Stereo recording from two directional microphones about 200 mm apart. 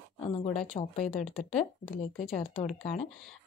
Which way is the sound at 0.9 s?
35° left (ahead or behind).